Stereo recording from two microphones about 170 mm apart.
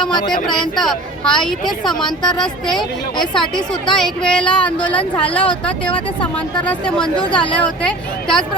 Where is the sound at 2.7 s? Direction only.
25° left (ahead or behind).